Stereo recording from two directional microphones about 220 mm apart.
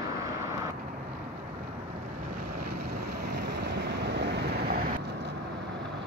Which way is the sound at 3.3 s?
50° right (ahead or behind).